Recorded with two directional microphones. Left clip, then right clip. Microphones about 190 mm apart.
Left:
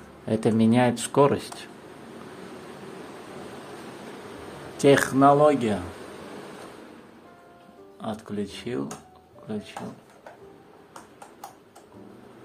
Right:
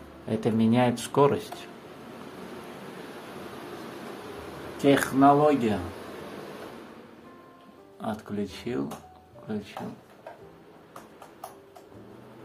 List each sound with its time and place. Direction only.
0.3 s speech: 25° left (ahead or behind)
4.7 s speech: 30° left (ahead or behind)
8.0 s speech: 10° left (ahead or behind)